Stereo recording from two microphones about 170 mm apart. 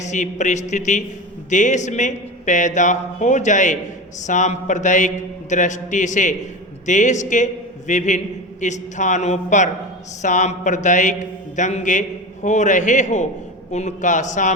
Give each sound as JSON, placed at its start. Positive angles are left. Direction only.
{"t": 0.0, "sound": "speech", "side_deg": 45}